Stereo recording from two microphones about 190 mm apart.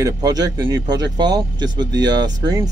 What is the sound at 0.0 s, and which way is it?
Speech, 20° right (ahead or behind).